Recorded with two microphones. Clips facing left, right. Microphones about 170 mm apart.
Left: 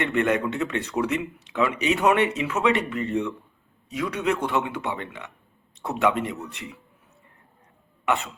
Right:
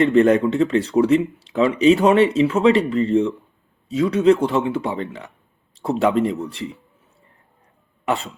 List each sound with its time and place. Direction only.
0.0 s speech: 30° right (ahead or behind)
8.0 s speech: 30° right (ahead or behind)